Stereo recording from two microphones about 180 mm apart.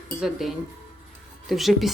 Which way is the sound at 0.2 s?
Centre (ahead or behind).